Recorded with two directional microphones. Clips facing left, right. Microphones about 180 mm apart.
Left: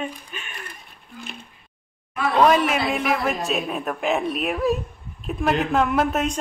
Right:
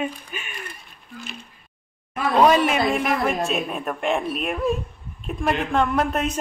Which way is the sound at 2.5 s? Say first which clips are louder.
Right 1 dB; centre (ahead or behind).